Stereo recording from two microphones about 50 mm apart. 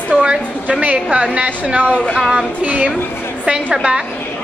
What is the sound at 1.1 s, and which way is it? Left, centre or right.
A woman's voice, right.